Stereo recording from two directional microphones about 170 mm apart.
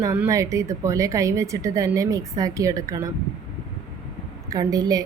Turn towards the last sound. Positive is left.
turn(degrees=-20)  # may be behind; listen again after turning